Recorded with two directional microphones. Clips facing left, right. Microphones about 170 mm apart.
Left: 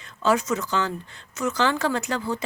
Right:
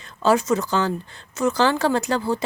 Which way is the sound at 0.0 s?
35° right (ahead or behind).